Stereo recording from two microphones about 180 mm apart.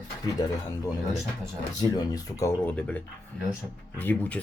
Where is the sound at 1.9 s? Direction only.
20° left (ahead or behind).